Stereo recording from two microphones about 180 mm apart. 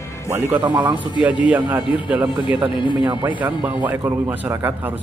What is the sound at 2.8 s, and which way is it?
Speech, 30° left (ahead or behind).